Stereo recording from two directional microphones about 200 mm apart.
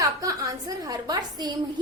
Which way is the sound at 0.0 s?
15° right (ahead or behind).